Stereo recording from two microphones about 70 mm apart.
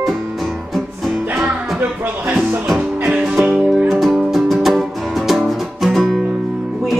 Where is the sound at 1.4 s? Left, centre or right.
Right.